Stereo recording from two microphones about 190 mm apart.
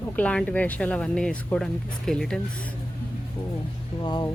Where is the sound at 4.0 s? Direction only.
25° left (ahead or behind).